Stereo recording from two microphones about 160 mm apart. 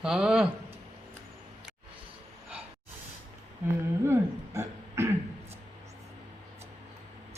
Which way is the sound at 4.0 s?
15° right (ahead or behind).